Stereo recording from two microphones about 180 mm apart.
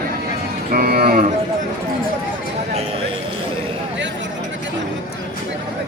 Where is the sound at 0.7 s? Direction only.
55° right (ahead or behind).